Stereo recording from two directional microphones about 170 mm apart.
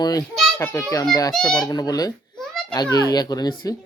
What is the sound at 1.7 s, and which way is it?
Speech, 20° left (ahead or behind).